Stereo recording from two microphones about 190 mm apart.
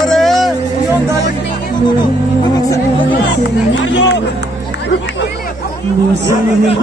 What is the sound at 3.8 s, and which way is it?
Speech, 70° left (ahead or behind).